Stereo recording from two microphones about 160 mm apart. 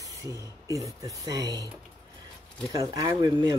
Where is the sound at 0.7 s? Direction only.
20° right (ahead or behind).